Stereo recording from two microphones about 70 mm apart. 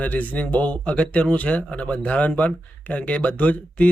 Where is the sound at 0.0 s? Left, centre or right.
Left.